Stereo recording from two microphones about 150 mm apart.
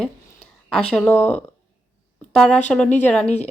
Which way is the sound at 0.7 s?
5° left (ahead or behind).